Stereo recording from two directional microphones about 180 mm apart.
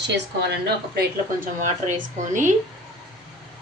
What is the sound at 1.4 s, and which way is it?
Speech, 45° right (ahead or behind).